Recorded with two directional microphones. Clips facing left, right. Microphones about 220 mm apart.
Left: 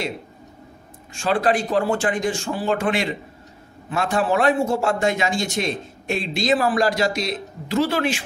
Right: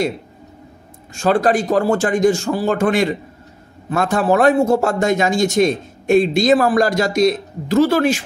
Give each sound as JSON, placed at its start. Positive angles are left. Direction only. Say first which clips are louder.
{"t": 1.1, "sound": "a man's voice", "louder": "right 5 dB", "side_deg": -40}